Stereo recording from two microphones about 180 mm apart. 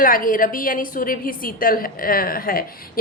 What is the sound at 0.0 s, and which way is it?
A woman's voice, 50° left (ahead or behind).